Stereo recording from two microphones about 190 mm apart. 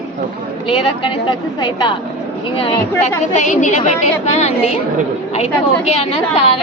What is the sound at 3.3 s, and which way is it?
A woman's voice, 40° left (ahead or behind).